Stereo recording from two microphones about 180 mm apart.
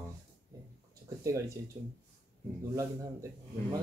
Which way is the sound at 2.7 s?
20° right (ahead or behind).